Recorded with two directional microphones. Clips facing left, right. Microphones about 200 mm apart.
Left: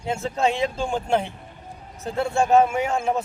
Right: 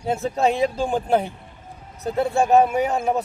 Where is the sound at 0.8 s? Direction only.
5° right (ahead or behind).